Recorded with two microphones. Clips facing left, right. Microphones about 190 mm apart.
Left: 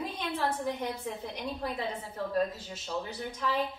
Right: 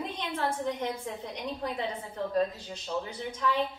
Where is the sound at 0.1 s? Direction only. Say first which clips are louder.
Even; 5° left (ahead or behind).